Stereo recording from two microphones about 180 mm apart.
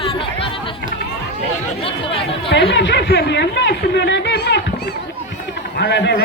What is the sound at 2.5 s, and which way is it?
A man's voice, 70° left (ahead or behind).